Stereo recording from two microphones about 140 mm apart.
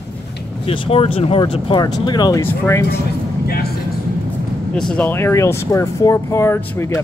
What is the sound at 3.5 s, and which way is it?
Speech, 90° left.